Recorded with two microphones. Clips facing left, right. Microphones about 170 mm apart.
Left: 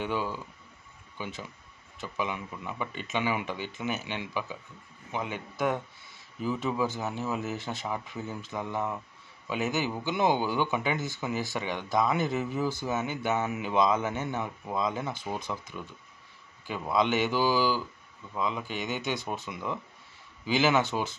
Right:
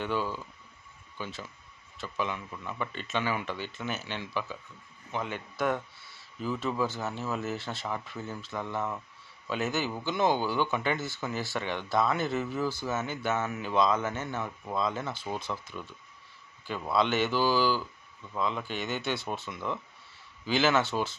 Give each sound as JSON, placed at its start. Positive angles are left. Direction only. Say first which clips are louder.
{"t": 0.0, "sound": "a man's voice", "louder": "even", "side_deg": 15}